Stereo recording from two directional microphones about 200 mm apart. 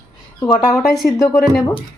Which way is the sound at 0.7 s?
Centre (ahead or behind).